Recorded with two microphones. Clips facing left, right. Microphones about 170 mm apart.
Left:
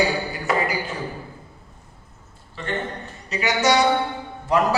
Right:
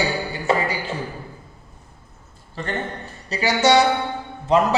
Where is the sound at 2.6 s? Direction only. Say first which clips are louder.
Right 1 dB; 40° right (ahead or behind).